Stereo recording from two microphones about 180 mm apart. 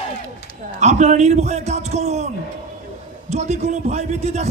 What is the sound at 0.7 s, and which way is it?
A man's voice, 40° right (ahead or behind).